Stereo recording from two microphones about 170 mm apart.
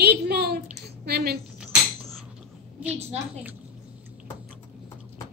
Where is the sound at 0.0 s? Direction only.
70° right (ahead or behind).